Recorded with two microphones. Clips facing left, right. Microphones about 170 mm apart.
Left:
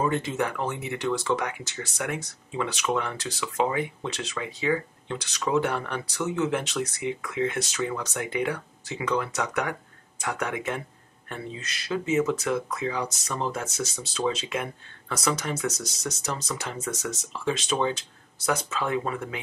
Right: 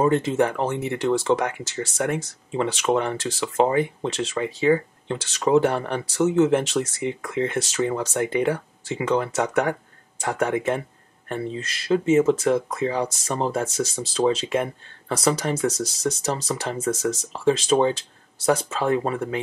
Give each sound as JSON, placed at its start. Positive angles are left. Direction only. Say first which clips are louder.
{"t": 0.0, "sound": "speech", "louder": "right 7 dB", "side_deg": -30}
{"t": 11.9, "sound": "speech", "louder": "right 7 dB", "side_deg": -30}